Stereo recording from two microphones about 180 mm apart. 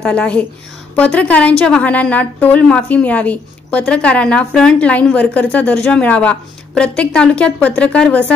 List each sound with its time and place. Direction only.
0.0 s a woman's voice: 5° left (ahead or behind)